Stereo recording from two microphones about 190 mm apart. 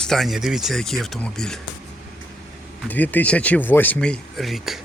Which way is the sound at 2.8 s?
10° left (ahead or behind).